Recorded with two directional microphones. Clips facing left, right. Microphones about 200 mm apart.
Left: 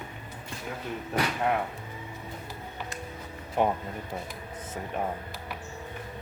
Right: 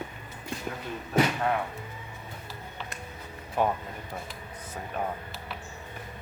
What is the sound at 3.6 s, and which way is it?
Speech, 20° left (ahead or behind).